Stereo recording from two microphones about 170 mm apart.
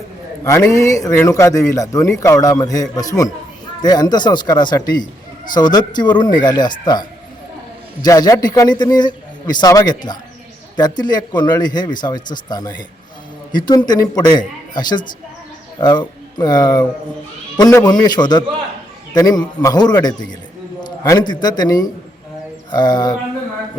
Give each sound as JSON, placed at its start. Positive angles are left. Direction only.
{"t": 0.7, "sound": "a man's voice", "side_deg": 20}